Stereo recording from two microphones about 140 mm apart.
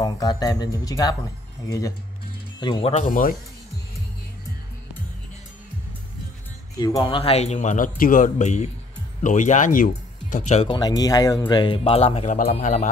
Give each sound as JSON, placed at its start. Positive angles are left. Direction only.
{"t": 0.0, "sound": "speech", "side_deg": 25}
{"t": 2.9, "sound": "speech", "side_deg": 70}
{"t": 6.8, "sound": "speech", "side_deg": 30}
{"t": 10.3, "sound": "speech", "side_deg": 50}
{"t": 10.7, "sound": "speech", "side_deg": 30}